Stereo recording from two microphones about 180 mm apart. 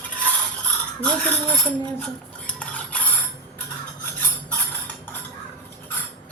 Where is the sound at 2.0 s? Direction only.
5° left (ahead or behind).